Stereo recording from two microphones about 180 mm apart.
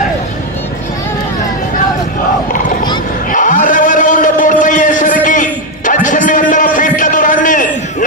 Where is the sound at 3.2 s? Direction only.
45° left (ahead or behind).